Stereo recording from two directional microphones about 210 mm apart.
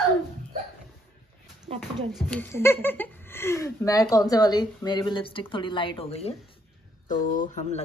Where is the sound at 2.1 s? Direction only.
5° left (ahead or behind); by 6.3 s 30° left (ahead or behind).